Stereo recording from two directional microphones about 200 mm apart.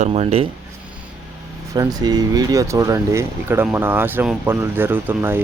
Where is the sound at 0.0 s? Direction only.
30° right (ahead or behind).